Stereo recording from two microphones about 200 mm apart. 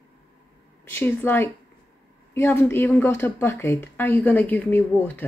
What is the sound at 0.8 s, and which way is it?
Speech, 10° left (ahead or behind).